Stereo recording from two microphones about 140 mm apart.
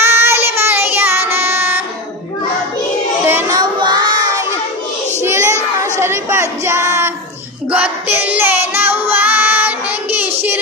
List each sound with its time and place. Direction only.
0.0 s child singing: 15° right (ahead or behind)
3.3 s child singing: 15° right (ahead or behind)
3.5 s child singing: 30° right (ahead or behind)
5.2 s a sound: 20° right (ahead or behind)
7.7 s music: 10° right (ahead or behind)